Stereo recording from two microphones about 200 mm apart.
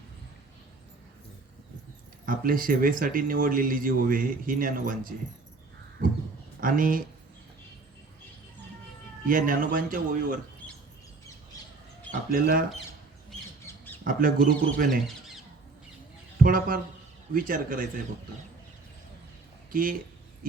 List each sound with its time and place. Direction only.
2.2 s speech: 45° right (ahead or behind)
6.6 s speech: 45° right (ahead or behind)
9.2 s speech: 45° right (ahead or behind)
11.5 s bird: 15° left (ahead or behind)
12.3 s speech: 45° right (ahead or behind)
13.7 s squawk: 10° left (ahead or behind)
14.0 s speech: 45° right (ahead or behind)
16.4 s speech: 45° right (ahead or behind)
19.7 s speech: 45° right (ahead or behind)